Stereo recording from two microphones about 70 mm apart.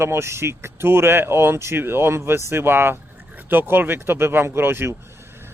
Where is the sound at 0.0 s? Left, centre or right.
Right.